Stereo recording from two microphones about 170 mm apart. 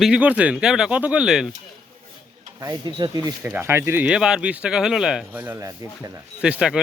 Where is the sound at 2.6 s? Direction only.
20° right (ahead or behind).